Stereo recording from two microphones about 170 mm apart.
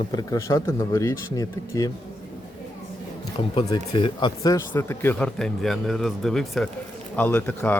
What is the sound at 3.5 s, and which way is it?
Speech, 25° left (ahead or behind).